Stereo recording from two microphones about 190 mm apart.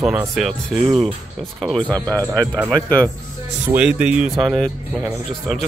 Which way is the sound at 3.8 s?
5° right (ahead or behind).